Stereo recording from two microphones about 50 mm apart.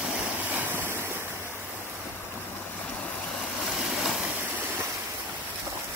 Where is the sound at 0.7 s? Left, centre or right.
Right.